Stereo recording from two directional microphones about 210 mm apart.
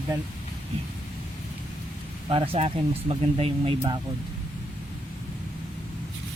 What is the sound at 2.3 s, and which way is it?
Speech, 25° right (ahead or behind).